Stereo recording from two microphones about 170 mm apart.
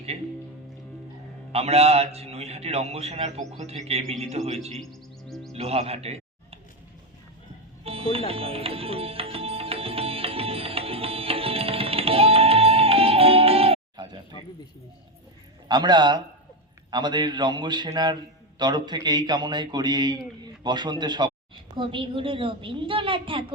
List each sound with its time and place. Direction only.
1.5 s a man's voice: 35° right (ahead or behind)
4.8 s music: centre (ahead or behind)
5.5 s music: 35° right (ahead or behind)
7.9 s music: 35° right (ahead or behind)
15.7 s a man's voice: 25° right (ahead or behind)